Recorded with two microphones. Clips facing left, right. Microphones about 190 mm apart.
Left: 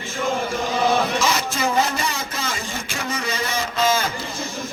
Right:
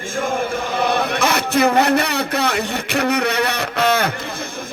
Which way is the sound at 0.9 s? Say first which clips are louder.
Right 2 dB; 60° right (ahead or behind).